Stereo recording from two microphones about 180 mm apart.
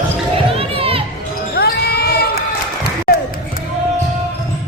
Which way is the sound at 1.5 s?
60° left (ahead or behind).